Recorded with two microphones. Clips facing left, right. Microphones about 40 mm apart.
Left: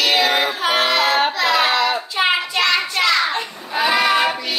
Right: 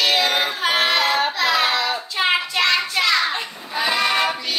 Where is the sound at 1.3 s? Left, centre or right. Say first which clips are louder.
Left 2 dB; centre.